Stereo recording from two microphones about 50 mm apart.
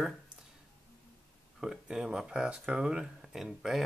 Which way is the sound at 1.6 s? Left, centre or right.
Centre.